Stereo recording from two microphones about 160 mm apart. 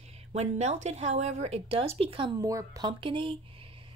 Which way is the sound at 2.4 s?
20° right (ahead or behind).